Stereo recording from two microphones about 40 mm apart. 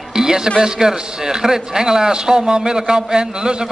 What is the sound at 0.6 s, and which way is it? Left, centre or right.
A man's voice, centre.